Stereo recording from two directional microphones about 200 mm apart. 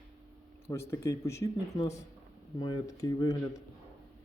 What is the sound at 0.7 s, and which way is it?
Speech, 15° left (ahead or behind).